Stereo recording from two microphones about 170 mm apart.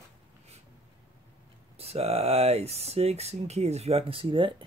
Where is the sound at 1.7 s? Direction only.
35° right (ahead or behind).